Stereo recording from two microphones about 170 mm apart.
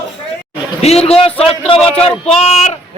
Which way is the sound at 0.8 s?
35° left (ahead or behind).